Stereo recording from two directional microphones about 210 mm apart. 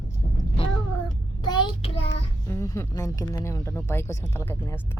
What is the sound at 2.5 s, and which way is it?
Speech, 15° left (ahead or behind).